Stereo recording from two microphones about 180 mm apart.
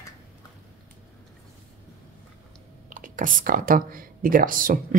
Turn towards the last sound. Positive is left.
turn(degrees=-50)  # may be behind; listen again after turning